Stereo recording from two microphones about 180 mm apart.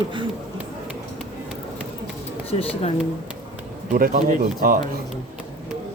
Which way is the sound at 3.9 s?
50° right (ahead or behind).